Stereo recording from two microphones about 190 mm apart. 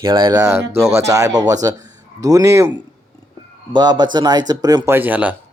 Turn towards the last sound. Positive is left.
turn(degrees=-10)  # may be behind; listen again after turning